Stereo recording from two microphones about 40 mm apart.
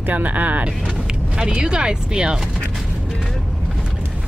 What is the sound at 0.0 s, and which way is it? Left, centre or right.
Speech, right.